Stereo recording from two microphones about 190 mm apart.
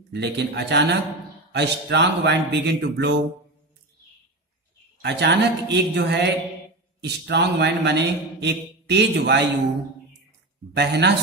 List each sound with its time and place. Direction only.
0.1 s a man's voice: 60° right (ahead or behind)
5.0 s a man's voice: 65° right (ahead or behind)
10.7 s a man's voice: 65° right (ahead or behind)